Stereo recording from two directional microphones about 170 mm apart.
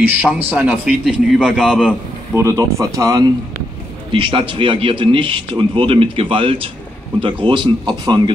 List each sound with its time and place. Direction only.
0.0 s speech: 10° right (ahead or behind)